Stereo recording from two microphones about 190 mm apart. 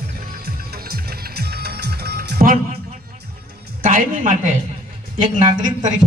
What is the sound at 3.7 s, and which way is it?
Speech, 45° right (ahead or behind).